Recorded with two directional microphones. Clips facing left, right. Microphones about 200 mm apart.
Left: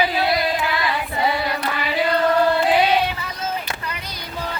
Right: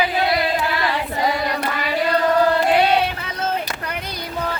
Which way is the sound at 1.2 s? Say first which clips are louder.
Even; 5° left (ahead or behind).